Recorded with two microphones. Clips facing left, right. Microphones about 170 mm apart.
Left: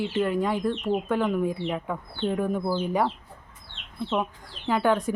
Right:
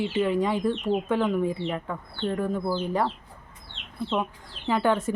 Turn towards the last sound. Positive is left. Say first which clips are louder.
# left 1 dB
turn(degrees=5)  # may be behind; listen again after turning